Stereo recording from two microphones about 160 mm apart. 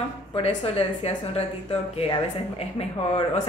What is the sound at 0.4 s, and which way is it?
A woman's voice, 40° left (ahead or behind).